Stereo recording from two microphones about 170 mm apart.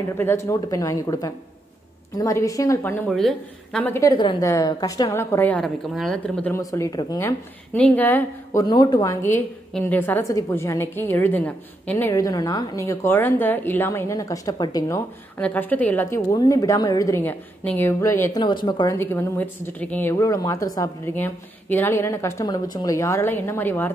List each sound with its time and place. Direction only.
0.2 s speech: 15° left (ahead or behind)
3.1 s a woman's voice: centre (ahead or behind)
4.2 s a woman's voice: 30° left (ahead or behind); by 6.5 s 5° left (ahead or behind)
6.5 s speech: 20° left (ahead or behind)
7.7 s a woman's voice: 10° left (ahead or behind)
8.6 s a woman's voice: 25° left (ahead or behind)
18.4 s a woman's voice: 25° left (ahead or behind)